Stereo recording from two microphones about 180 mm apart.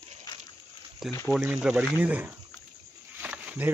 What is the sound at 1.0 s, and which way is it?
Speech, centre (ahead or behind).